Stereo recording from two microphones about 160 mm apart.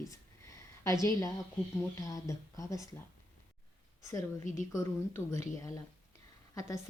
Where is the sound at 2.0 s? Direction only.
20° left (ahead or behind).